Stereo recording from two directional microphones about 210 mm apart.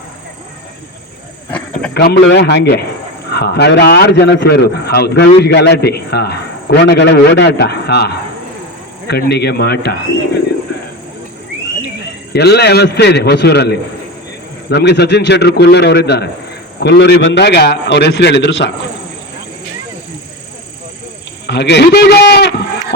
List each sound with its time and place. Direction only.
1.5 s a sound: 5° left (ahead or behind)
1.9 s a man's voice: 50° left (ahead or behind)
9.3 s a man's voice: 50° left (ahead or behind)
12.3 s a man's voice: 50° left (ahead or behind)
21.4 s a man's voice: 55° left (ahead or behind)